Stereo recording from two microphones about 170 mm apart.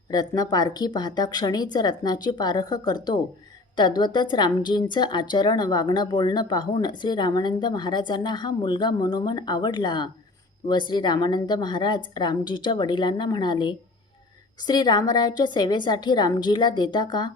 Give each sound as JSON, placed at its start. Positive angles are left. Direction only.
{"t": 0.1, "sound": "a woman's voice", "side_deg": 25}